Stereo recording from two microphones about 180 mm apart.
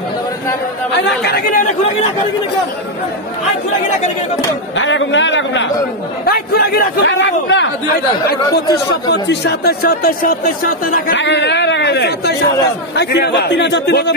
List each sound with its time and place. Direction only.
1.0 s speech: 60° left (ahead or behind)
4.7 s a man's voice: 90° left
6.2 s a man's voice: 60° left (ahead or behind); by 7.7 s 85° left
9.1 s speech: 70° left (ahead or behind); by 11.1 s 55° left (ahead or behind)
11.1 s a man's voice: 75° left (ahead or behind)